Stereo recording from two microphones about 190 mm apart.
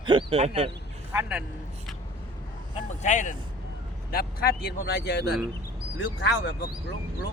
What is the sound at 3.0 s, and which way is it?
Speech, 40° left (ahead or behind).